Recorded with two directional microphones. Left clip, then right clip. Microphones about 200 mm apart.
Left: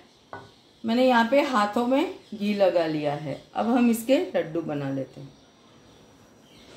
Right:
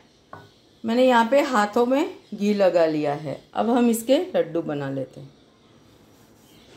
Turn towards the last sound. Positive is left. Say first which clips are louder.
# right 3 dB
turn(degrees=-30)  # may be behind; listen again after turning